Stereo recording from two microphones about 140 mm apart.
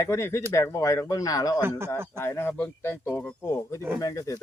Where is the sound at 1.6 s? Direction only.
15° right (ahead or behind).